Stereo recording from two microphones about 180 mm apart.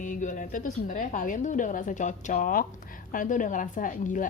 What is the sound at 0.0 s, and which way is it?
A woman's voice, 45° left (ahead or behind).